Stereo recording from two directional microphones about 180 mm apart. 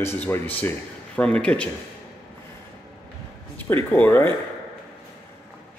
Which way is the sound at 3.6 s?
10° left (ahead or behind).